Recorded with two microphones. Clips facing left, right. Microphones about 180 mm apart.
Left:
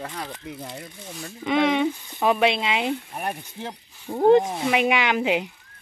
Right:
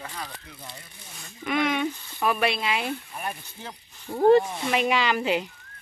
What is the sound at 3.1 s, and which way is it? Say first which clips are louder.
Speech: left 4 dB; 65° left (ahead or behind).